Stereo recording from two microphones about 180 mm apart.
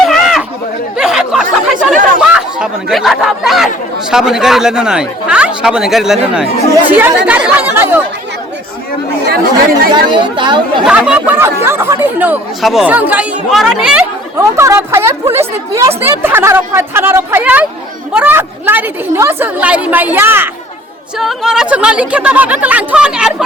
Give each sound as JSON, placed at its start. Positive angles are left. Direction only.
{"t": 0.0, "sound": "chatter", "side_deg": 0}
{"t": 2.2, "sound": "speech", "side_deg": -5}
{"t": 9.9, "sound": "speech", "side_deg": -25}
{"t": 10.8, "sound": "speech", "side_deg": -5}
{"t": 14.3, "sound": "speech", "side_deg": -15}